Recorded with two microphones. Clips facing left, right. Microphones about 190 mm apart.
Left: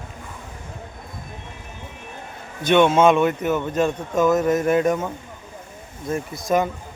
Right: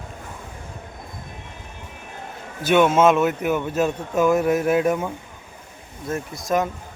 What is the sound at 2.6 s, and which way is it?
Speech, 5° right (ahead or behind).